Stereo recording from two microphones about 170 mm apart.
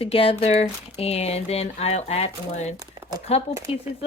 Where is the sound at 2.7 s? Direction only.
20° right (ahead or behind).